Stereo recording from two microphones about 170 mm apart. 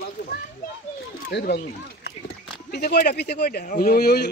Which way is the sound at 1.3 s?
80° left.